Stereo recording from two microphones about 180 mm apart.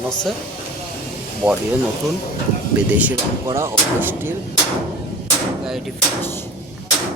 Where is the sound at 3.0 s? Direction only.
10° right (ahead or behind).